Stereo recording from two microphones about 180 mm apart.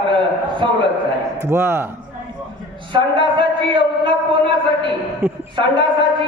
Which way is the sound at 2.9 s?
25° right (ahead or behind).